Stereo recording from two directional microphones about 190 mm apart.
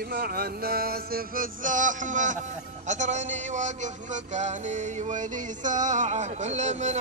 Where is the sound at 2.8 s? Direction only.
40° right (ahead or behind).